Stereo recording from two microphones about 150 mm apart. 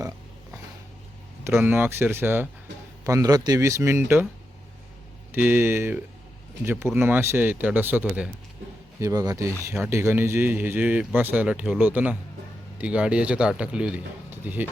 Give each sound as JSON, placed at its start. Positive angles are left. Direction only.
{"t": 1.5, "sound": "speech", "side_deg": -15}
{"t": 5.3, "sound": "speech", "side_deg": -15}
{"t": 9.0, "sound": "speech", "side_deg": -20}